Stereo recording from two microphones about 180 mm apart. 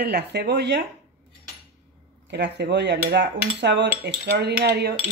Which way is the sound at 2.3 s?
70° right (ahead or behind).